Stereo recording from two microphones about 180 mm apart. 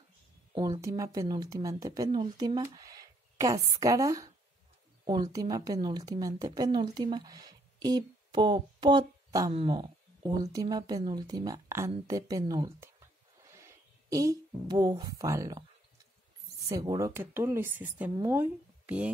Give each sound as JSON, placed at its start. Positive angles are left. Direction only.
{"t": 0.6, "sound": "a woman's voice", "side_deg": -20}
{"t": 16.6, "sound": "a woman's voice", "side_deg": -20}